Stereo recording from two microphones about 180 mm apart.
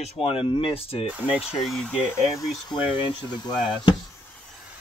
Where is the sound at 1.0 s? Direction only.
5° right (ahead or behind).